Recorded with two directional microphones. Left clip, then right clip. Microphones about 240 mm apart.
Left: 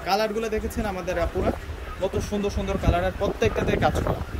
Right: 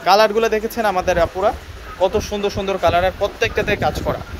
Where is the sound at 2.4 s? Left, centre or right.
Centre.